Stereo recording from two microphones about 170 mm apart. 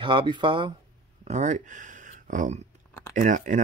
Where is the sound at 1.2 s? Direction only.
40° right (ahead or behind).